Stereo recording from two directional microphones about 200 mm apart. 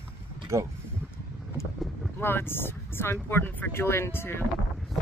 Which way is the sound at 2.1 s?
10° left (ahead or behind).